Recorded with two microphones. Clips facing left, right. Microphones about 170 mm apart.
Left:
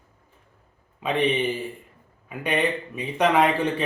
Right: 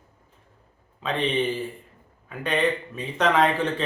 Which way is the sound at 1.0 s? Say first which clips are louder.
Left 3 dB; 15° left (ahead or behind).